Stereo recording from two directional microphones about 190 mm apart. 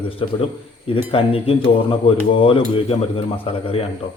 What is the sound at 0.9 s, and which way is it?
A man's voice, 30° left (ahead or behind).